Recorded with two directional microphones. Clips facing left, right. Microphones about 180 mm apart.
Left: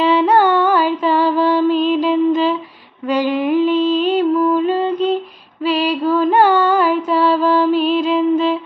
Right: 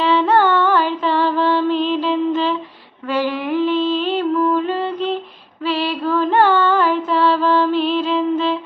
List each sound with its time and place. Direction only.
0.0 s music: 15° left (ahead or behind)